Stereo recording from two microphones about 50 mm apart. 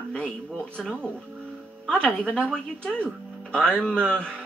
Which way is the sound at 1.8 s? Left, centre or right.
Centre.